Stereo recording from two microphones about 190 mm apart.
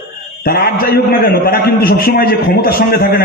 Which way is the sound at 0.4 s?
50° left (ahead or behind).